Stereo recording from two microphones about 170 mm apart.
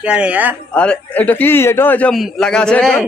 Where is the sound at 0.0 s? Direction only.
5° right (ahead or behind).